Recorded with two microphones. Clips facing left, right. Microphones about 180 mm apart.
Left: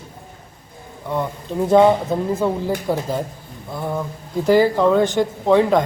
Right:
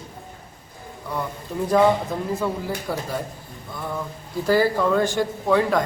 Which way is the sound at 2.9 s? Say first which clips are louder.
Left 6 dB; 20° left (ahead or behind).